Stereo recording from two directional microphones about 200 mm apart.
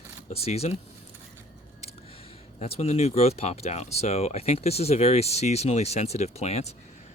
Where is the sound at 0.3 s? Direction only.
30° left (ahead or behind).